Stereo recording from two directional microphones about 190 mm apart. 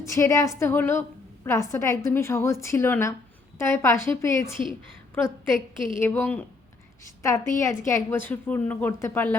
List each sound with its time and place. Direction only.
0.1 s a woman's voice: 15° left (ahead or behind)